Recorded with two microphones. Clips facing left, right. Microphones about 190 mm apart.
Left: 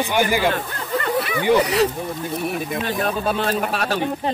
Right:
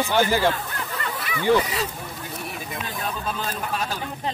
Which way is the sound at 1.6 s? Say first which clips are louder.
Left 10 dB; 70° left (ahead or behind).